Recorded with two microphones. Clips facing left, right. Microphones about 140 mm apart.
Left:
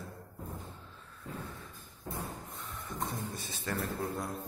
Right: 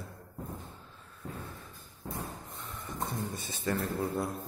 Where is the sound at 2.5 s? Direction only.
Centre (ahead or behind).